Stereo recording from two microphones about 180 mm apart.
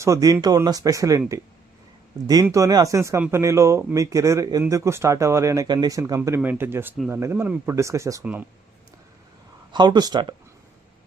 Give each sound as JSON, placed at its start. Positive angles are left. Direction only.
{"t": 0.0, "sound": "speech", "side_deg": -20}
{"t": 2.2, "sound": "speech", "side_deg": -20}
{"t": 9.7, "sound": "speech", "side_deg": -25}